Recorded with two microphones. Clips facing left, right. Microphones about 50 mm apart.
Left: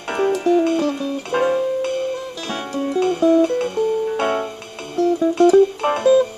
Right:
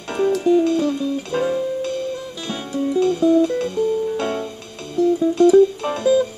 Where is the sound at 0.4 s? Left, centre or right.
Left.